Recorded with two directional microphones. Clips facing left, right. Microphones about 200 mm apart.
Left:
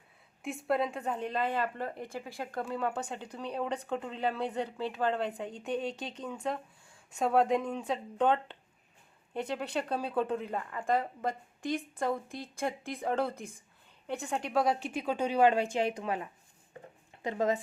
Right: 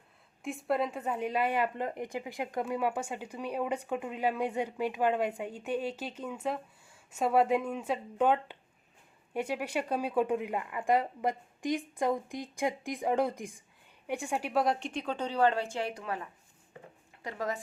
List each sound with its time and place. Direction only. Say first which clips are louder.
0.4 s a woman's voice: even; centre (ahead or behind); by 17.6 s 20° left (ahead or behind)